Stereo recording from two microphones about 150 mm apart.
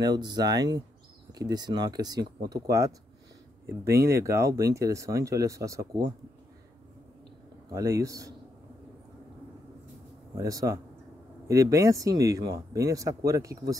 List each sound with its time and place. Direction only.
0.0 s speech: 30° right (ahead or behind)
3.6 s speech: 20° right (ahead or behind)
7.7 s speech: 20° right (ahead or behind)
10.3 s speech: 25° right (ahead or behind)